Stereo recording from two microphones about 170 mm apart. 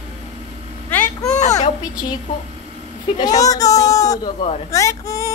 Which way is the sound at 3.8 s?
20° left (ahead or behind).